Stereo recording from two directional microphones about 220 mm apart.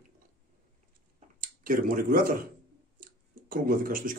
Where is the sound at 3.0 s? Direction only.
40° right (ahead or behind).